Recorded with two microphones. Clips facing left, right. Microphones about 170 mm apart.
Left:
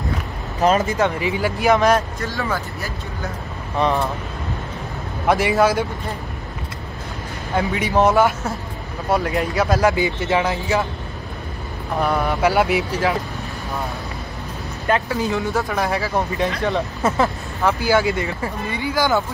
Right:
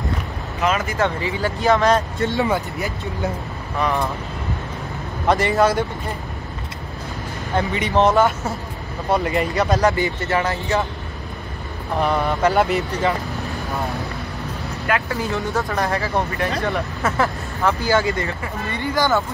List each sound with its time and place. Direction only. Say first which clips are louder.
0.6 s speech: left 4 dB; 35° left (ahead or behind)
0.9 s speech: left 2 dB; 15° left (ahead or behind)
2.1 s speech: right 5 dB; 25° right (ahead or behind)
5.3 s speech: even; 5° left (ahead or behind)
7.5 s speech: even; centre (ahead or behind)
12.0 s speech: even; centre (ahead or behind)
15.0 s speech: left 2 dB; 5° left (ahead or behind)
16.3 s speech: left 2 dB; 20° left (ahead or behind)